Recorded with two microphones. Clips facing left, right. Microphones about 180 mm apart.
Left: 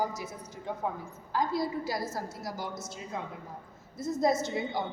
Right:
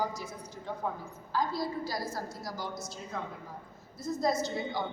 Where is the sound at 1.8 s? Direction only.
25° left (ahead or behind).